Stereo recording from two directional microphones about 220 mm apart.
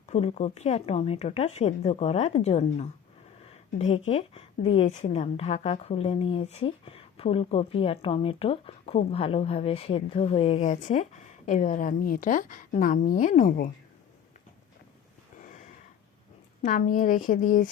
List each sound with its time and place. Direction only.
0.0 s a woman's voice: 30° left (ahead or behind)
15.4 s a sound: 35° left (ahead or behind)
16.6 s speech: 35° left (ahead or behind)